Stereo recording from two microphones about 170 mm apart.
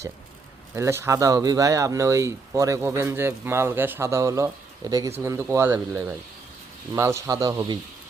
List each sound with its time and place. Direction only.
0.8 s a man's voice: 15° right (ahead or behind)